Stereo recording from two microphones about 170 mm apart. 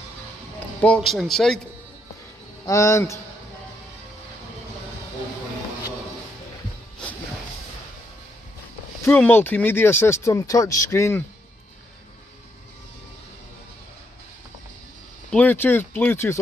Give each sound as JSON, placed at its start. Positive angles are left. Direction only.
{"t": 0.7, "sound": "speech", "side_deg": 5}
{"t": 2.6, "sound": "speech", "side_deg": 15}
{"t": 9.0, "sound": "speech", "side_deg": 10}
{"t": 15.3, "sound": "speech", "side_deg": 10}